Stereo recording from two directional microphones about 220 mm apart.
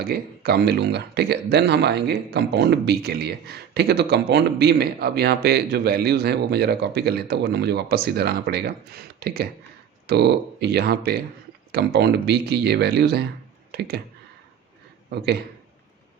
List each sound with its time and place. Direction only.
0.0 s speech: 45° right (ahead or behind)